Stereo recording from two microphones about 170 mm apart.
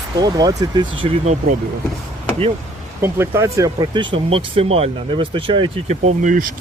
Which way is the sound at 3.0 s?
15° right (ahead or behind).